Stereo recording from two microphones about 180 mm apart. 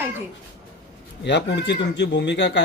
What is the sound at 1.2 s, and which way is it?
Speech, 75° left (ahead or behind).